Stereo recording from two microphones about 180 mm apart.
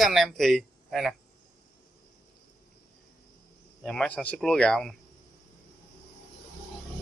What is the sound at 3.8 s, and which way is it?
Speech, 5° left (ahead or behind).